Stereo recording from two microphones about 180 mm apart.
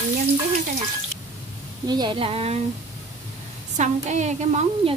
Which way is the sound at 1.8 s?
25° right (ahead or behind).